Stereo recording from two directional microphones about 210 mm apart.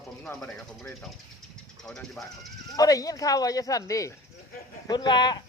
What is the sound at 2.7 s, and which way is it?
Speech, 15° left (ahead or behind).